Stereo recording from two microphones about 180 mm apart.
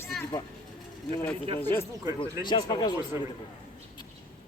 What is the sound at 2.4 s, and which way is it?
Speech, 25° left (ahead or behind).